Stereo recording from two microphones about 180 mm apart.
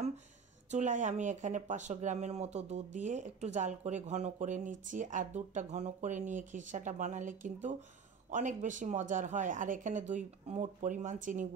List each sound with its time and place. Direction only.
0.7 s speech: 40° right (ahead or behind)